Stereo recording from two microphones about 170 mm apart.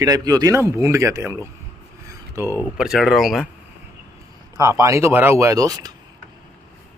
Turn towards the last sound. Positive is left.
turn(degrees=-20)  # may be behind; listen again after turning